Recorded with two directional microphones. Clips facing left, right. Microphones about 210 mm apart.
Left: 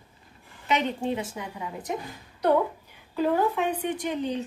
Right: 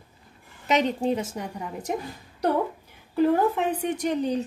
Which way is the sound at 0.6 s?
40° right (ahead or behind).